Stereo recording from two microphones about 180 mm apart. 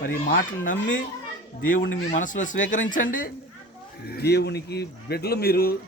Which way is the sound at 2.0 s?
45° left (ahead or behind).